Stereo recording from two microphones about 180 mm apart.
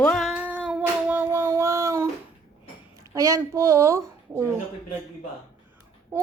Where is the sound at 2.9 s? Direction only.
15° right (ahead or behind).